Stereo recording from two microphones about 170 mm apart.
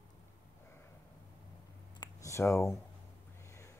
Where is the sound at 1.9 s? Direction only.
15° left (ahead or behind).